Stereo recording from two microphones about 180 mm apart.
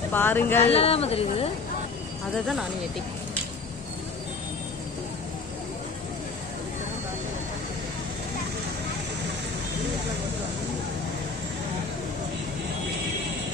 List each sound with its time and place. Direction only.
0.1 s speech: 10° left (ahead or behind)
0.7 s speech: 35° left (ahead or behind)